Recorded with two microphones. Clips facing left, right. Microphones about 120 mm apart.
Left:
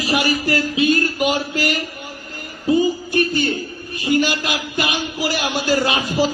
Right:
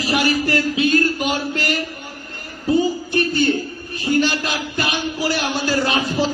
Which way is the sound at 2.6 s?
10° left (ahead or behind).